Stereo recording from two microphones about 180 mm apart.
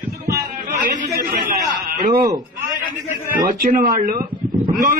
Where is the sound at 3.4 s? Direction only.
50° right (ahead or behind).